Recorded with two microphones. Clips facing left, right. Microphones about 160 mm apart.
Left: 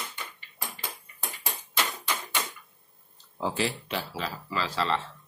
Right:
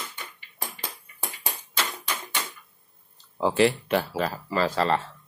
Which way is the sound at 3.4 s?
65° right (ahead or behind).